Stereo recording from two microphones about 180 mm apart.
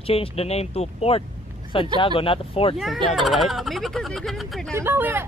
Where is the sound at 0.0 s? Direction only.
35° left (ahead or behind).